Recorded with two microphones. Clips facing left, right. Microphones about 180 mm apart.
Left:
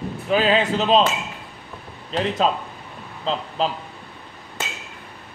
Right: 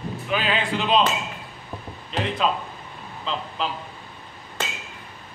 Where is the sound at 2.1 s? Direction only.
35° left (ahead or behind).